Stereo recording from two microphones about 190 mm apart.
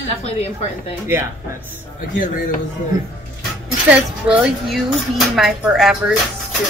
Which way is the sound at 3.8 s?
5° right (ahead or behind).